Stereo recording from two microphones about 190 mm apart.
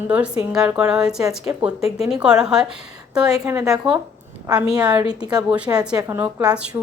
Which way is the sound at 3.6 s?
5° right (ahead or behind).